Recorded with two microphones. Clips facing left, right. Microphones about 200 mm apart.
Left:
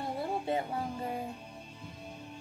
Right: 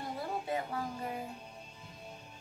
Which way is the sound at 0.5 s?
25° left (ahead or behind).